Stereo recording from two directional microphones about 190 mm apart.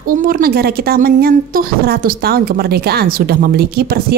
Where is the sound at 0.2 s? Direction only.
50° right (ahead or behind).